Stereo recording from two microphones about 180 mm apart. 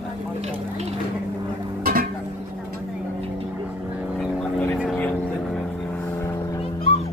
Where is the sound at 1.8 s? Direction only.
55° right (ahead or behind).